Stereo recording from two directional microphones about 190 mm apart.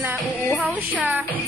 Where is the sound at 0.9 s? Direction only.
10° right (ahead or behind).